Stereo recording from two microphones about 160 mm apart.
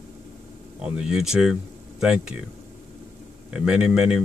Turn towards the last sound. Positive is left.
turn(degrees=-5)  # may be behind; listen again after turning